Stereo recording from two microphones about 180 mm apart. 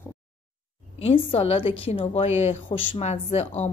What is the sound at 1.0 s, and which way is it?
Speech, 30° left (ahead or behind).